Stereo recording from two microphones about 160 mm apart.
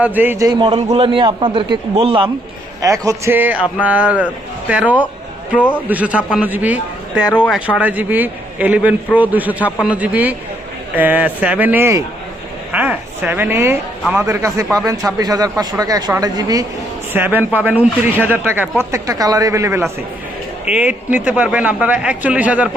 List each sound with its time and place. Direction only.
0.0 s speech: 10° right (ahead or behind)
0.9 s a man's voice: 30° right (ahead or behind)
2.8 s speech: 20° right (ahead or behind)
5.5 s a man's voice: 10° left (ahead or behind)
5.9 s speech: 10° right (ahead or behind)
7.3 s a man's voice: 10° left (ahead or behind)
7.7 s speech: 10° right (ahead or behind)
17.1 s speech: 10° right (ahead or behind)
21.2 s speech: 10° right (ahead or behind)